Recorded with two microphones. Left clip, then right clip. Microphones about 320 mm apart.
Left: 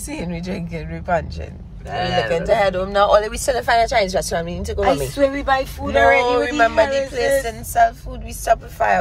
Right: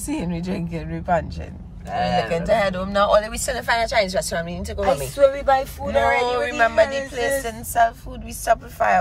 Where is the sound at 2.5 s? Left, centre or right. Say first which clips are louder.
Left 3 dB; centre.